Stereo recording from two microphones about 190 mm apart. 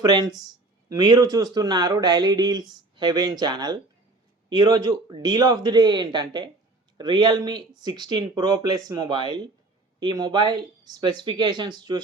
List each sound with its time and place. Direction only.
0.0 s speech: 20° right (ahead or behind)